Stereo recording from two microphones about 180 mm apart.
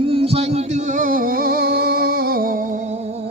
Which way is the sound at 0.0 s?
30° right (ahead or behind).